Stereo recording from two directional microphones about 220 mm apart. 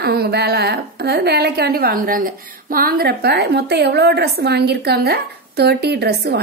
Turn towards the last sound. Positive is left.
turn(degrees=-45)  # may be behind; listen again after turning